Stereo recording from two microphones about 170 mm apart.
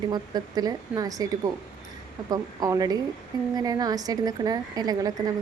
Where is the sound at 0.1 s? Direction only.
25° right (ahead or behind).